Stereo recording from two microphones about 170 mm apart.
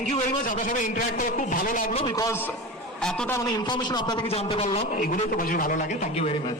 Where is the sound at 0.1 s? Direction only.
50° left (ahead or behind).